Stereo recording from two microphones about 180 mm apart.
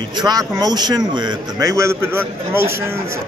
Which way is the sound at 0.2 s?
20° right (ahead or behind).